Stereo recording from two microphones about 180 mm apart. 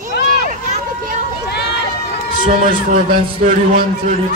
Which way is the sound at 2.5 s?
50° right (ahead or behind).